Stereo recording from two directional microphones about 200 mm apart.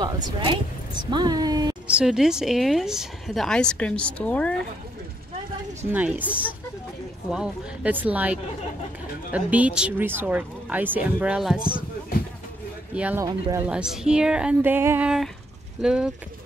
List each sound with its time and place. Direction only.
0.0 s a woman's voice: 20° right (ahead or behind)
1.9 s a woman's voice: 5° right (ahead or behind)
5.9 s speech: 10° right (ahead or behind)
12.9 s speech: 10° right (ahead or behind)
13.7 s a woman's voice: 5° right (ahead or behind)